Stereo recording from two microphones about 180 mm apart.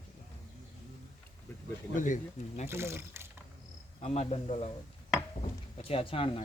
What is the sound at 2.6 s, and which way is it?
Speech, 15° right (ahead or behind).